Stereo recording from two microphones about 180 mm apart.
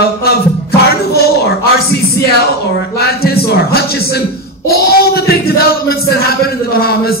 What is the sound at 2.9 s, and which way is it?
Speech, 60° left (ahead or behind).